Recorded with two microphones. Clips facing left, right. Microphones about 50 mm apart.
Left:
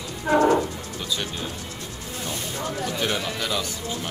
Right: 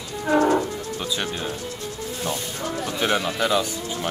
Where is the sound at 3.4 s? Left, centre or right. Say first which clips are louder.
Right 6 dB; centre.